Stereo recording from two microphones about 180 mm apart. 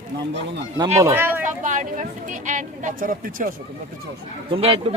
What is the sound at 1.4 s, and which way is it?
Speech, 45° right (ahead or behind).